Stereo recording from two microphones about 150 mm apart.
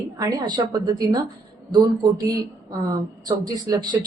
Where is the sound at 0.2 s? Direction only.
25° right (ahead or behind).